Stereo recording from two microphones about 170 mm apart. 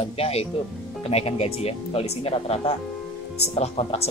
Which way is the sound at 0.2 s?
35° left (ahead or behind).